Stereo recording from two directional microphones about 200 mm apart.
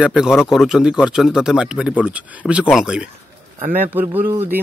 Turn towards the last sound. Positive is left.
turn(degrees=-10)  # may be behind; listen again after turning